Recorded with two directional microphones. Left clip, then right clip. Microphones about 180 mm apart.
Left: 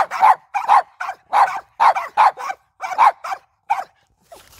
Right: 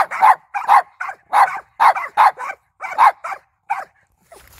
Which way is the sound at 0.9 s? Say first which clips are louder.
Even; 40° left (ahead or behind).